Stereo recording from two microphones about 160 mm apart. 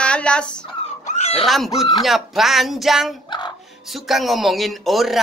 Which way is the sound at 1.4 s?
Centre (ahead or behind).